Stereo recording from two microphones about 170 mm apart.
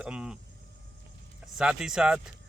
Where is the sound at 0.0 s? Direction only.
5° right (ahead or behind).